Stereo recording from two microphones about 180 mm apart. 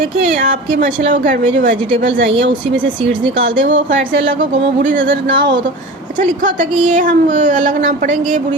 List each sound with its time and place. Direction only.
2.0 s speech: 85° right
4.8 s speech: 50° right (ahead or behind)
6.1 s speech: 45° right (ahead or behind)